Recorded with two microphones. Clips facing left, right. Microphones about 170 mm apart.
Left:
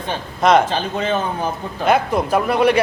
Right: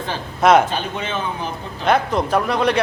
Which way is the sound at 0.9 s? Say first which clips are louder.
Left 6 dB; 40° left (ahead or behind).